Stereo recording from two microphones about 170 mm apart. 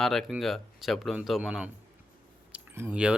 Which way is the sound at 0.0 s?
Centre (ahead or behind).